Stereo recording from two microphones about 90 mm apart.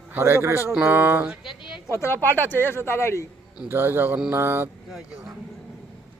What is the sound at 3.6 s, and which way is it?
Speech, 25° right (ahead or behind).